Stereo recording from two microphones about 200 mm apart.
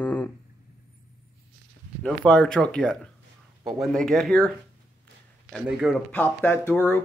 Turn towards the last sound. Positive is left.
turn(degrees=10)  # may be behind; listen again after turning